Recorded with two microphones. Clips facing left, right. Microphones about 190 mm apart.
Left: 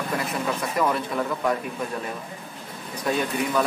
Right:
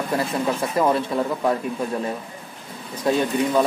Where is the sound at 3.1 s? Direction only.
25° right (ahead or behind).